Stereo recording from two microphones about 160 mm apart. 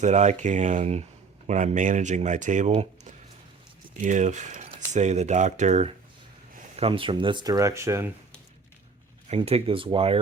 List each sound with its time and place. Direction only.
0.0 s speech: 45° right (ahead or behind)
6.7 s speech: 35° right (ahead or behind); by 8.1 s 15° right (ahead or behind)
9.3 s speech: 40° right (ahead or behind)